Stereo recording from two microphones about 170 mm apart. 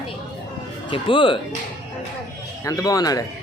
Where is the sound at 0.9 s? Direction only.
30° left (ahead or behind).